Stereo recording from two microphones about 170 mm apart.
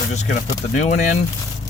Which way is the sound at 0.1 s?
45° left (ahead or behind).